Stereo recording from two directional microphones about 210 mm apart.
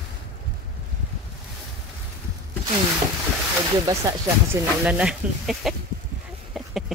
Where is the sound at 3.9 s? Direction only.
15° right (ahead or behind).